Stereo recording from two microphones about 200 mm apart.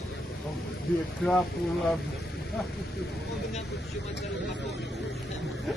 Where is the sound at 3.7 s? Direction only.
60° left (ahead or behind).